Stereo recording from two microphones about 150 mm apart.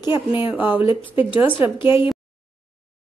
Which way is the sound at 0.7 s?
35° left (ahead or behind).